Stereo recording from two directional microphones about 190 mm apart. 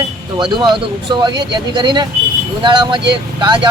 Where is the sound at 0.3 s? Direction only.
25° right (ahead or behind).